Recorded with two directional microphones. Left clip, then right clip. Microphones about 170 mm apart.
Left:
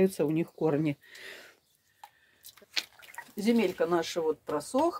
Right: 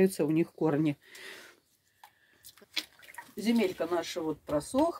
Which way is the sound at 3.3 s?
50° left (ahead or behind).